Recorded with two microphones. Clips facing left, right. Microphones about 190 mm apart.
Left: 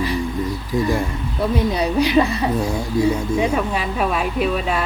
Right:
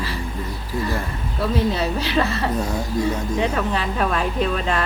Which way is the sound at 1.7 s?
15° left (ahead or behind).